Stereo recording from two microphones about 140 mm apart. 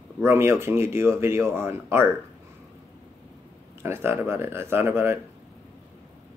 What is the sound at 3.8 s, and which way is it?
Speech, 15° right (ahead or behind).